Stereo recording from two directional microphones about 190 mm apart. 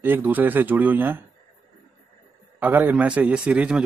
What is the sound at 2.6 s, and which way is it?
Speech, 10° right (ahead or behind).